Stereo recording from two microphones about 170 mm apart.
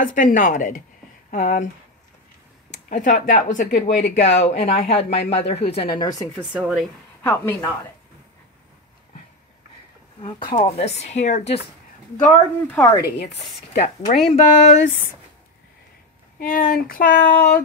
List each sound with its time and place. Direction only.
0.0 s speech: 50° left (ahead or behind)
2.9 s speech: 50° left (ahead or behind)
5.1 s speech: 90° left
5.5 s speech: 35° left (ahead or behind)
6.3 s speech: centre (ahead or behind)
7.2 s speech: 10° left (ahead or behind)
10.2 s speech: 30° left (ahead or behind)
12.7 s speech: 20° left (ahead or behind)
13.7 s speech: 40° left (ahead or behind)
16.3 s a sound: 60° left (ahead or behind)